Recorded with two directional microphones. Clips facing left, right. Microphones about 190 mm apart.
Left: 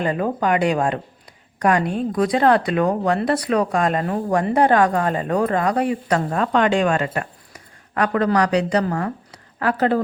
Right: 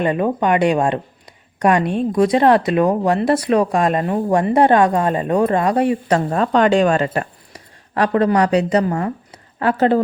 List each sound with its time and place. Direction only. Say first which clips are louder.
0.0 s speech: right 3 dB; 20° right (ahead or behind)